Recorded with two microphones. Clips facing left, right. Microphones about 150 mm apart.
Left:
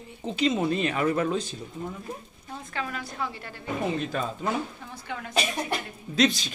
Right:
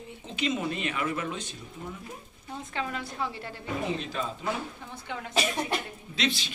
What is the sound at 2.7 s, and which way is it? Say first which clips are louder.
Speech: even; 25° right (ahead or behind).